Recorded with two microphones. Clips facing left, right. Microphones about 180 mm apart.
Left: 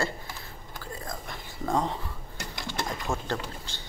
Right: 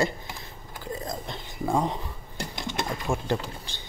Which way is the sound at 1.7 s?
15° right (ahead or behind).